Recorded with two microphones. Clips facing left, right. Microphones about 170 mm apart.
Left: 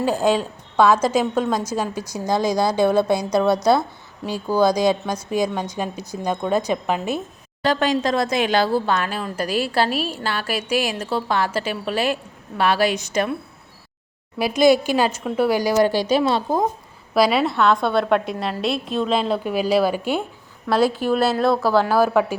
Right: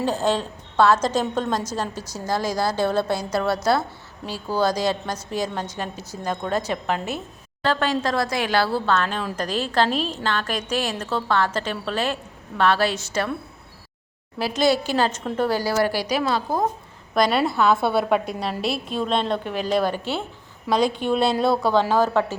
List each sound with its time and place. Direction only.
0.0 s a woman's voice: 10° left (ahead or behind)
14.3 s a woman's voice: 15° left (ahead or behind)
17.2 s a woman's voice: 5° left (ahead or behind)